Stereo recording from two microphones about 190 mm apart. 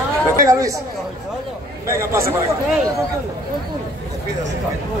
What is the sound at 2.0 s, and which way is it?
Speech, 15° right (ahead or behind).